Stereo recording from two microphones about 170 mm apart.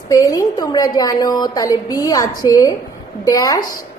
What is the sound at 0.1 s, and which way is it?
A woman's voice, 20° left (ahead or behind).